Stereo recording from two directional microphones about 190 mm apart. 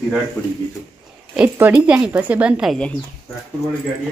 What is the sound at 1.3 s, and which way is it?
Speech, 10° right (ahead or behind).